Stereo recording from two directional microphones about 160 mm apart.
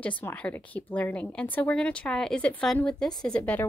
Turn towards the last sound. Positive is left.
turn(degrees=5)  # may be behind; listen again after turning